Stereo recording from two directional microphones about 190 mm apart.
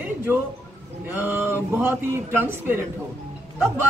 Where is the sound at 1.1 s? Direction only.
10° right (ahead or behind).